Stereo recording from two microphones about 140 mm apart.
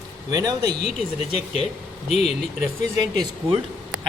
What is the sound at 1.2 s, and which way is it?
Speech, 50° left (ahead or behind).